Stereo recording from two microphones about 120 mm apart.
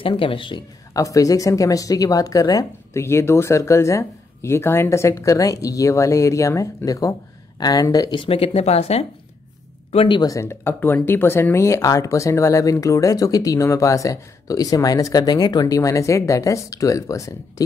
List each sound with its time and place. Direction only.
0.0 s speech: 45° left (ahead or behind)
0.9 s speech: 30° left (ahead or behind)
8.2 s speech: 50° left (ahead or behind)
9.9 s speech: 45° left (ahead or behind)
10.2 s speech: 25° left (ahead or behind)